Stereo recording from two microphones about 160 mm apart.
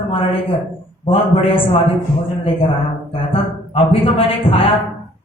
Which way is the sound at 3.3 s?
35° left (ahead or behind).